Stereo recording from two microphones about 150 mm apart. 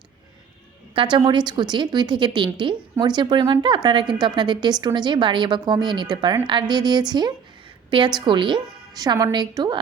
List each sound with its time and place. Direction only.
0.9 s a woman's voice: 30° right (ahead or behind)